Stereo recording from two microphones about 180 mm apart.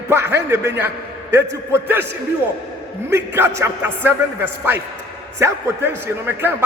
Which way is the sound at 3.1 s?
15° right (ahead or behind).